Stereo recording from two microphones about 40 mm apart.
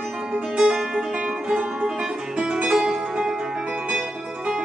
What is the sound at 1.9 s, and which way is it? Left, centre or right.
Music, centre.